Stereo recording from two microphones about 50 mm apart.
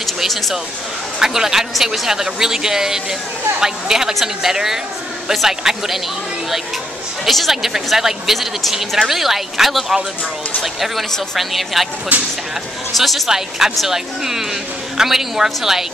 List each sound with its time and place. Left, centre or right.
0.0 s a woman's voice: centre
1.2 s a woman's voice: centre
7.2 s a woman's voice: centre
12.1 s speech: right
12.9 s a woman's voice: centre